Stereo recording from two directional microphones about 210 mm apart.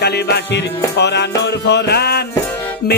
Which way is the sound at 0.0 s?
50° left (ahead or behind).